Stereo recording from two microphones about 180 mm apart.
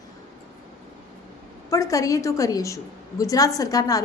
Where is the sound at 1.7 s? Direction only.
20° left (ahead or behind).